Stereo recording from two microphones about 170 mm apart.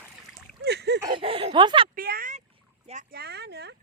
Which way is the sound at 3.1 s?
75° right (ahead or behind).